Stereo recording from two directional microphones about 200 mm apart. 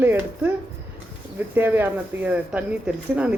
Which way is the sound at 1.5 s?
10° right (ahead or behind).